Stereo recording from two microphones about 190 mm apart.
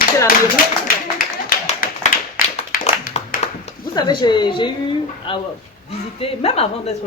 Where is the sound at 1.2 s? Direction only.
50° left (ahead or behind).